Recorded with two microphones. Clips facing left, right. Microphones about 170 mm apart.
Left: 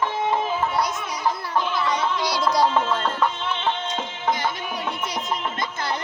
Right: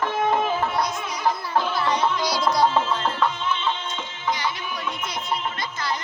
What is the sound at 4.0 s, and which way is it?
Music, 50° left (ahead or behind).